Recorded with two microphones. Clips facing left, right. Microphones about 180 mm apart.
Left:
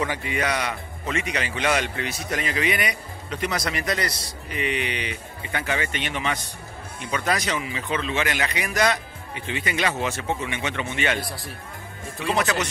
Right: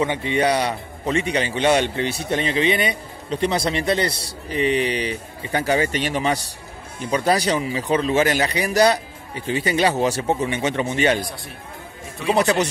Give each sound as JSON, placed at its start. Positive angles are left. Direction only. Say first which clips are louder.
{"t": 0.0, "sound": "a man's voice", "louder": "right 6 dB", "side_deg": -25}
{"t": 12.3, "sound": "a man's voice", "louder": "right 6 dB", "side_deg": -35}